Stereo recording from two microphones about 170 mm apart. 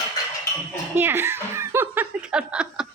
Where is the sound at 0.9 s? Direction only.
15° right (ahead or behind).